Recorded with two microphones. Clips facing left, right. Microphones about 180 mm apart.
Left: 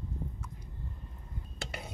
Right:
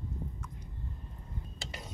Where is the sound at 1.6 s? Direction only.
60° left (ahead or behind).